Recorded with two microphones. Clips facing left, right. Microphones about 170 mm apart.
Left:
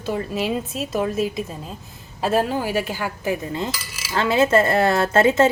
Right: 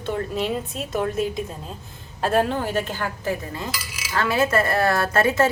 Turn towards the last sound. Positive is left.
turn(degrees=25)  # may be behind; listen again after turning